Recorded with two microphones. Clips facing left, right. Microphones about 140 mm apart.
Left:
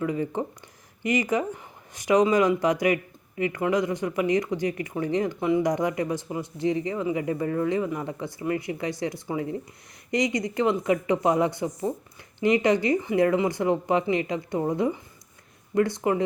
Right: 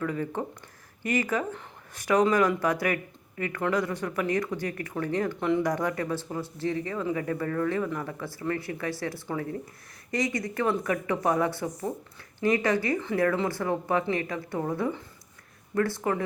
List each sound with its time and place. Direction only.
0.0 s speech: 15° left (ahead or behind)